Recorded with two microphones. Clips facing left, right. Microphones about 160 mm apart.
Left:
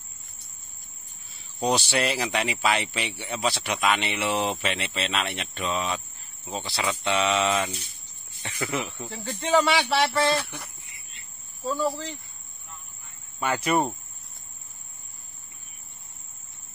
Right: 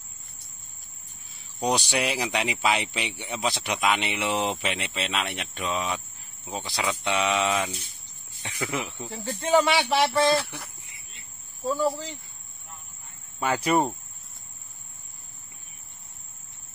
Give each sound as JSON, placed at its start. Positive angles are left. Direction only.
{"t": 1.6, "sound": "a man's voice", "side_deg": -10}
{"t": 13.4, "sound": "speech", "side_deg": -25}